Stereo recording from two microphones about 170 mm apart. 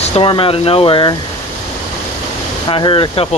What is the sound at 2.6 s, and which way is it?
Speech, 30° left (ahead or behind).